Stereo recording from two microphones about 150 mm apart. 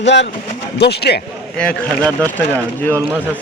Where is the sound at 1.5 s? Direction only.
10° left (ahead or behind).